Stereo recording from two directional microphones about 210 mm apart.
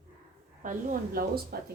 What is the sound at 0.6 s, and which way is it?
Speech, 40° right (ahead or behind).